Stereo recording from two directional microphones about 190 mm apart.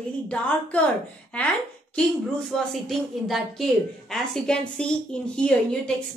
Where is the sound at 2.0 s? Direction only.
5° left (ahead or behind).